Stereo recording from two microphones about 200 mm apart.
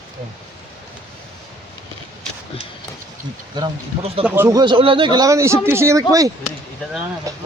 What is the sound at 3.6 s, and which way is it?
Speech, 30° right (ahead or behind).